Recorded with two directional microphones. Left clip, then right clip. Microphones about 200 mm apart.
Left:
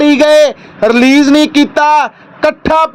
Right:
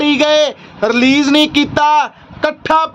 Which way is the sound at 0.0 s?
15° left (ahead or behind).